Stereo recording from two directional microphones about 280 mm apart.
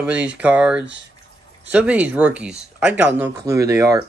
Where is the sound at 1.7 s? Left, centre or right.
Centre.